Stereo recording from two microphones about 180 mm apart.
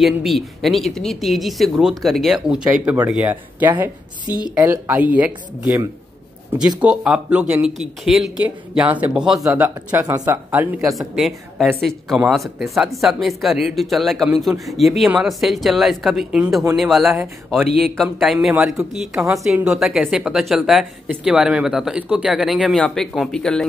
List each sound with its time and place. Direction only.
0.0 s a woman's voice: centre (ahead or behind)
17.6 s speech: 60° right (ahead or behind)
17.9 s a woman's voice: centre (ahead or behind)